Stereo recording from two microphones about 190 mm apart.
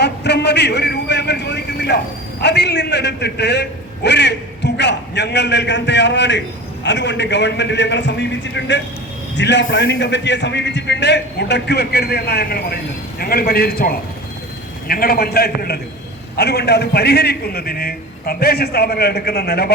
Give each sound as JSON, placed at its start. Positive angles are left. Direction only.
{"t": 0.0, "sound": "a man's voice", "side_deg": 60}